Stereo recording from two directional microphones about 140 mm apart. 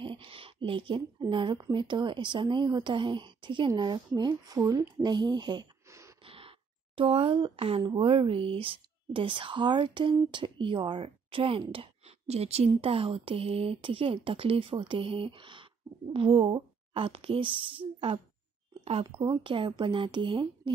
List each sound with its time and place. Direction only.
0.0 s speech: 35° right (ahead or behind)
4.6 s speech: 15° right (ahead or behind); by 5.7 s 30° right (ahead or behind)
6.2 s a sound: 40° right (ahead or behind)
7.0 s speech: 40° right (ahead or behind)
19.0 s speech: 30° right (ahead or behind)